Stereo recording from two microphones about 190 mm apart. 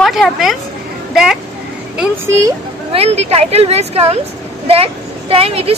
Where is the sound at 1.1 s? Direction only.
Centre (ahead or behind).